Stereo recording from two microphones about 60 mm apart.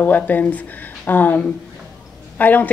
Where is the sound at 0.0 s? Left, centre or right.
Left.